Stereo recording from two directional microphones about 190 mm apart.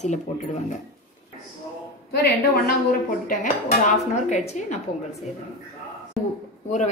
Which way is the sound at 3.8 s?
40° left (ahead or behind).